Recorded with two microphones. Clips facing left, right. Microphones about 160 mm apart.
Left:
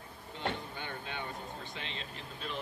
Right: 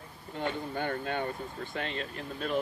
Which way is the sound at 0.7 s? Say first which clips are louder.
Right 9 dB; 50° right (ahead or behind).